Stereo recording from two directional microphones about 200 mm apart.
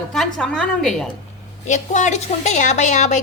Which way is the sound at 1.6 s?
35° left (ahead or behind).